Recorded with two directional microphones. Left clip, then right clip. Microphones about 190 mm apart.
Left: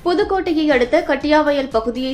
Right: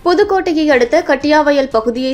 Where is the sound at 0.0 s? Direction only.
20° right (ahead or behind).